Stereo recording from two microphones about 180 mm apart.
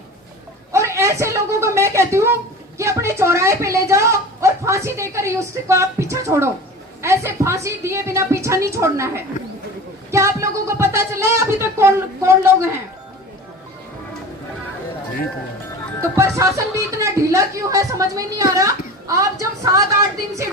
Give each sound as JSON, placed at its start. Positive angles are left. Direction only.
{"t": 0.7, "sound": "a sound", "side_deg": -15}
{"t": 2.7, "sound": "a woman's voice", "side_deg": -15}
{"t": 16.0, "sound": "a woman's voice", "side_deg": -15}